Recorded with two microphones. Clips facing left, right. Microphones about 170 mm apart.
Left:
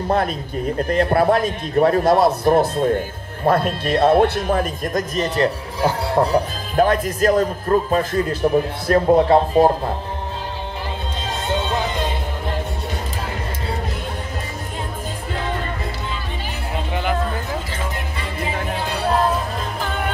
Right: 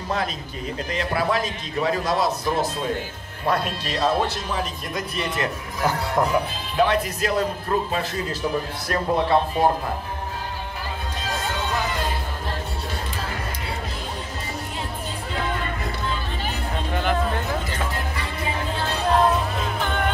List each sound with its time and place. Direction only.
0.7 s a man's voice: 55° left (ahead or behind)
8.9 s speech: 40° left (ahead or behind)
11.2 s music: 25° left (ahead or behind)
19.0 s music: centre (ahead or behind)